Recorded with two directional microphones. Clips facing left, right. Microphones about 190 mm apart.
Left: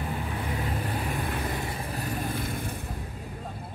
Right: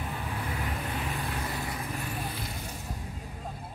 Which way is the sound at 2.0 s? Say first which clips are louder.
Left 5 dB; 45° left (ahead or behind).